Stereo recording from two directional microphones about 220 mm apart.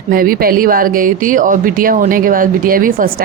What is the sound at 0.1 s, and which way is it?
Speech, 40° right (ahead or behind).